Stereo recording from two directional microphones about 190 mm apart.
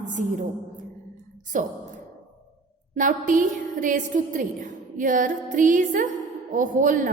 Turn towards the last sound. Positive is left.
turn(degrees=-45)  # may be behind; listen again after turning